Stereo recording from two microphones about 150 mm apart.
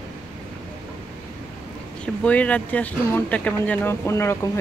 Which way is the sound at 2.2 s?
10° left (ahead or behind).